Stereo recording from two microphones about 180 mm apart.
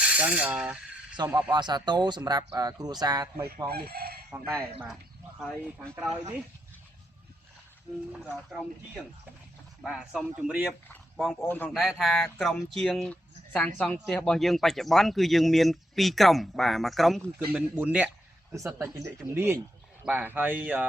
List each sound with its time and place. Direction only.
0.0 s speech: 5° right (ahead or behind)
1.1 s speech: 25° right (ahead or behind)
3.7 s speech: 60° right (ahead or behind)
5.4 s speech: centre (ahead or behind)
8.1 s speech: 5° right (ahead or behind)
9.8 s speech: 5° right (ahead or behind)
10.7 s a man's voice: 10° left (ahead or behind)
11.7 s speech: centre (ahead or behind)
17.5 s speech: 10° right (ahead or behind)